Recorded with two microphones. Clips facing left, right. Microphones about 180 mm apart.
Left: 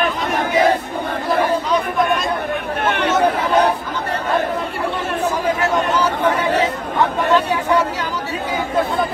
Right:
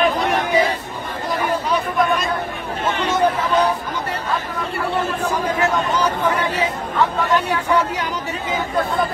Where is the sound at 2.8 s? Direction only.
65° left (ahead or behind).